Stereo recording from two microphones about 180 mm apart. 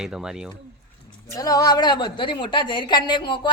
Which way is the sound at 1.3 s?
20° left (ahead or behind).